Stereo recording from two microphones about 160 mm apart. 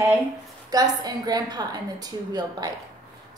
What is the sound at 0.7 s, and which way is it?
A woman's voice, 25° right (ahead or behind).